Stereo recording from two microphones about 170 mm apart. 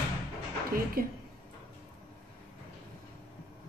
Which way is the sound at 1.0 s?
60° right (ahead or behind).